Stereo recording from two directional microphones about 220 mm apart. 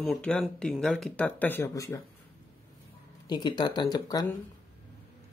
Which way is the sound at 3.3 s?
20° left (ahead or behind).